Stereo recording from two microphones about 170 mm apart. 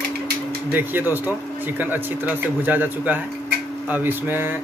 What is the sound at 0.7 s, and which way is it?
Speech, 10° right (ahead or behind).